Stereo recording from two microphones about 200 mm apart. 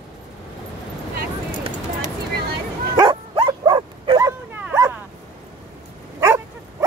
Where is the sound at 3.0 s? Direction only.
25° right (ahead or behind).